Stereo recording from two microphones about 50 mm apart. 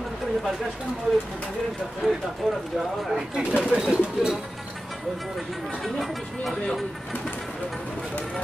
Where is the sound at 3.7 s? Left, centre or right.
Centre.